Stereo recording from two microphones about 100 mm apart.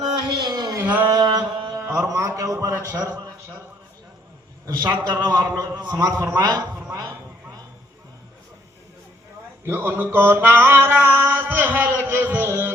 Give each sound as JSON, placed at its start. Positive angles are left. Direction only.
{"t": 0.3, "sound": "a sound", "side_deg": -45}
{"t": 0.8, "sound": "a sound", "side_deg": -20}
{"t": 1.1, "sound": "mantra", "side_deg": -40}
{"t": 1.7, "sound": "a man's voice", "side_deg": -35}
{"t": 4.6, "sound": "a man's voice", "side_deg": -40}
{"t": 9.6, "sound": "mantra", "side_deg": -20}